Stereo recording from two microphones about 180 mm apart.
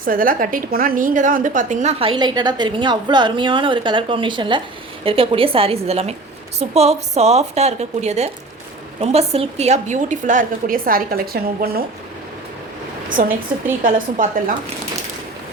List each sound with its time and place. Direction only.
0.0 s a woman's voice: 50° right (ahead or behind)
13.1 s a woman's voice: 50° right (ahead or behind)